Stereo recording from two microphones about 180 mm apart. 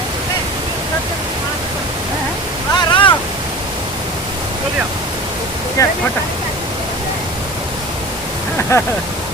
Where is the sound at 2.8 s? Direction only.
25° left (ahead or behind).